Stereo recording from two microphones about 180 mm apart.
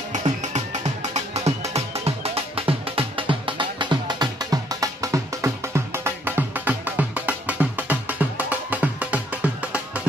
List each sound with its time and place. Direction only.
0.1 s music: 40° right (ahead or behind); by 10.0 s 5° right (ahead or behind)